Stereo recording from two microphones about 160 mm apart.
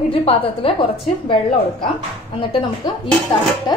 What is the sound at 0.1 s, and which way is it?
A woman's voice, 35° left (ahead or behind).